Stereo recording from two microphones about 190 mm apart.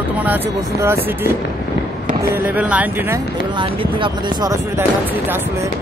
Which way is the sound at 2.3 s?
10° right (ahead or behind).